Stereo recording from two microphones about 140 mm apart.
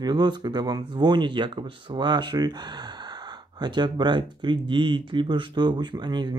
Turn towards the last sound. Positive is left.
turn(degrees=-30)  # may be behind; listen again after turning